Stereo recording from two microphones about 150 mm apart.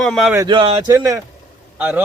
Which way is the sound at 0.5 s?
35° right (ahead or behind).